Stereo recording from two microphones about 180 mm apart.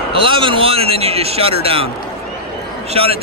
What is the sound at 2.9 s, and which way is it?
Speech, 35° right (ahead or behind).